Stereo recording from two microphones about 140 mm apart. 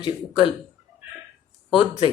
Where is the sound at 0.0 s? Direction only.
35° left (ahead or behind).